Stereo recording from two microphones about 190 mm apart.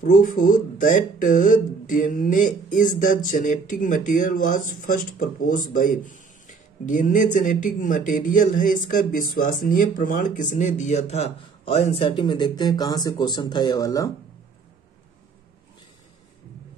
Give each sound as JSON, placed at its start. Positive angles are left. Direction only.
{"t": 0.0, "sound": "speech", "side_deg": 45}